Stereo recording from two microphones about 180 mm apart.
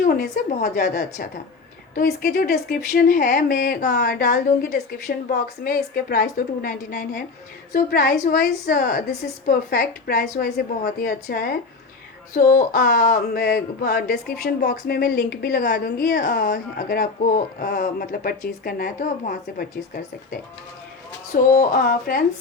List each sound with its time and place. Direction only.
0.0 s a woman's voice: 55° left (ahead or behind)
17.2 s speech: 45° left (ahead or behind)
21.5 s a woman's voice: 50° left (ahead or behind)